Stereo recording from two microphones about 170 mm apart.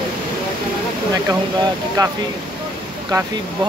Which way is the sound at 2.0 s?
20° right (ahead or behind).